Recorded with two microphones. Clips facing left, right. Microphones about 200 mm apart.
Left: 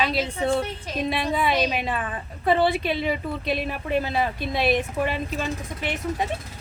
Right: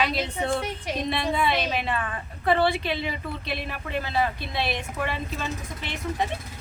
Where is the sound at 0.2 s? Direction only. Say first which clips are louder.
Left 3 dB; 15° left (ahead or behind).